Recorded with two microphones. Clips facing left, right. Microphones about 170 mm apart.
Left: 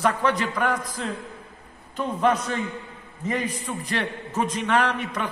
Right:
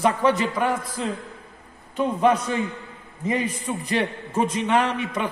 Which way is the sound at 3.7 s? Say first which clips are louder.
Right 4 dB; 10° right (ahead or behind).